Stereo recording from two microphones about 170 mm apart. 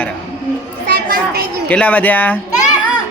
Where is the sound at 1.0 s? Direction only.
65° right (ahead or behind).